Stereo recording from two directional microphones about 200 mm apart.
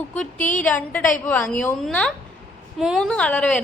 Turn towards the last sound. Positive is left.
turn(degrees=5)  # may be behind; listen again after turning